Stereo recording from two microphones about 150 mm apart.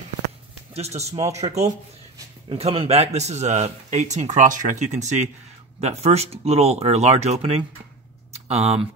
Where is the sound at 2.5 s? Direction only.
40° right (ahead or behind).